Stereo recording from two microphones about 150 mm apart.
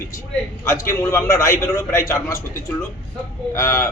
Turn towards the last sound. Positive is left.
turn(degrees=20)  # may be behind; listen again after turning